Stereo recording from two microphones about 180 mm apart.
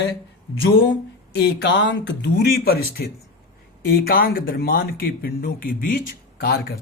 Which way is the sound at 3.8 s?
55° left (ahead or behind).